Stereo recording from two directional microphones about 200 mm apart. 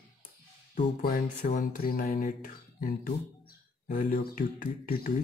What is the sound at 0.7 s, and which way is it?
Speech, 45° left (ahead or behind).